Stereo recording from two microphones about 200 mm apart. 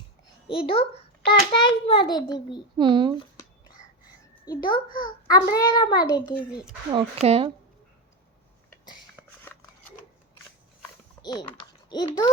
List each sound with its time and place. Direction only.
0.4 s a child's voice: 25° left (ahead or behind)
2.7 s speech: 25° right (ahead or behind)
4.4 s a child's voice: 25° left (ahead or behind)
4.9 s a child's voice: 45° left (ahead or behind)
5.3 s a child's voice: 20° left (ahead or behind)
6.9 s speech: 30° right (ahead or behind)
9.1 s a sound: 10° left (ahead or behind)
11.2 s a child's voice: 20° left (ahead or behind)